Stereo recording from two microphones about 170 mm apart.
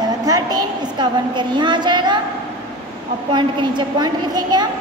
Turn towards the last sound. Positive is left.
turn(degrees=-25)  # may be behind; listen again after turning